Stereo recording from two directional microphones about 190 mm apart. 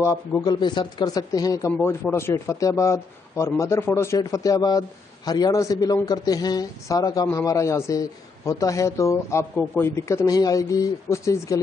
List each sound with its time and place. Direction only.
0.0 s a man's voice: 15° left (ahead or behind)